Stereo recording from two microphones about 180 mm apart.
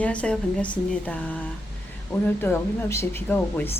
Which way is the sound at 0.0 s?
5° left (ahead or behind).